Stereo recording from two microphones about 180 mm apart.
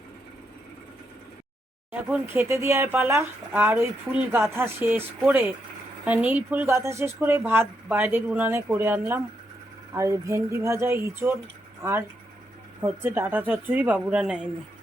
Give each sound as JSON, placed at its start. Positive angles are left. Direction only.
{"t": 1.9, "sound": "speech", "side_deg": -10}